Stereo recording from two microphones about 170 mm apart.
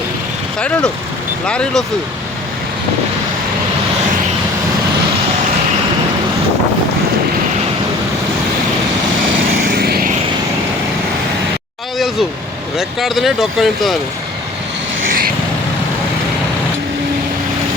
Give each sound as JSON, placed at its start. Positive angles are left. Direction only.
{"t": 0.6, "sound": "speech", "side_deg": 5}
{"t": 9.6, "sound": "vehicle", "side_deg": -65}
{"t": 12.7, "sound": "speech", "side_deg": 0}